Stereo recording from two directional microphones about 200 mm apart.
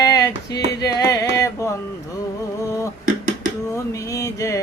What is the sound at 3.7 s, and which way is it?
Music, 15° left (ahead or behind).